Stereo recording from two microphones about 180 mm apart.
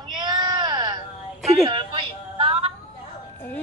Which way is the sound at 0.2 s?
25° right (ahead or behind).